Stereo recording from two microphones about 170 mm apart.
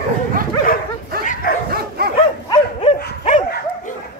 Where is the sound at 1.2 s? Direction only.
50° left (ahead or behind).